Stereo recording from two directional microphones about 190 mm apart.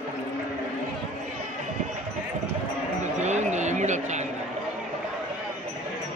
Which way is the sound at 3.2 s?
40° right (ahead or behind).